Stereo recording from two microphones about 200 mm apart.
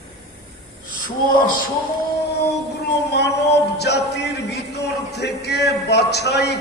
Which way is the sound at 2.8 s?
55° left (ahead or behind).